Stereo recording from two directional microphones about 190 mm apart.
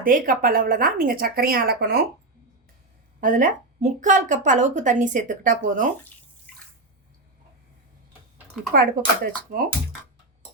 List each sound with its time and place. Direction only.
0.0 s a woman's voice: 45° right (ahead or behind)
3.2 s a woman's voice: 45° right (ahead or behind)
8.7 s a woman's voice: 50° right (ahead or behind)